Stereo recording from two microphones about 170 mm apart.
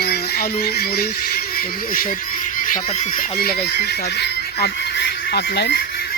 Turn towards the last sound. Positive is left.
turn(degrees=70)  # may be behind; listen again after turning